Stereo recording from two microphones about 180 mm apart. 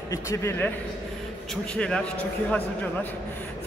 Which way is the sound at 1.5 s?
5° left (ahead or behind).